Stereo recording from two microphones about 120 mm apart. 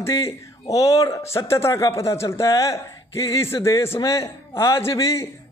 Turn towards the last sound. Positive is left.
turn(degrees=25)  # may be behind; listen again after turning